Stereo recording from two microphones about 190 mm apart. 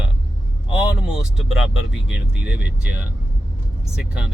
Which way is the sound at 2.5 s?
60° left (ahead or behind).